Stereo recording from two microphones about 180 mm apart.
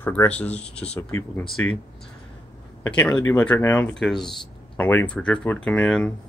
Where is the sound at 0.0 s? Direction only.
10° left (ahead or behind).